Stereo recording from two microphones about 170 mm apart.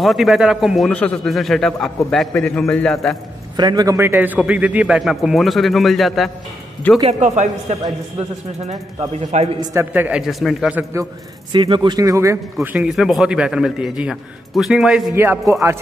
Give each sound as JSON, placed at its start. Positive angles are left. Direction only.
{"t": 0.0, "sound": "a man's voice", "side_deg": 0}
{"t": 3.5, "sound": "a man's voice", "side_deg": -25}
{"t": 7.0, "sound": "a man's voice", "side_deg": -40}
{"t": 9.6, "sound": "a man's voice", "side_deg": -15}
{"t": 11.5, "sound": "a man's voice", "side_deg": -30}
{"t": 12.6, "sound": "a man's voice", "side_deg": -5}
{"t": 15.1, "sound": "a man's voice", "side_deg": -15}